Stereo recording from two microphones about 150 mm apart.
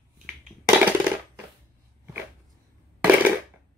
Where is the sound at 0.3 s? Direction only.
5° right (ahead or behind).